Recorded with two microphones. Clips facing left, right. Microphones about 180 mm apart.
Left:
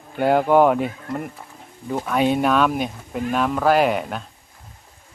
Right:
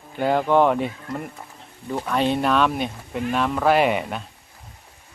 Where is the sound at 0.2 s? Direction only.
5° left (ahead or behind).